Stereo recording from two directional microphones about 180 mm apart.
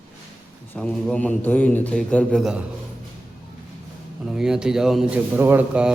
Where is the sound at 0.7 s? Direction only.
5° left (ahead or behind).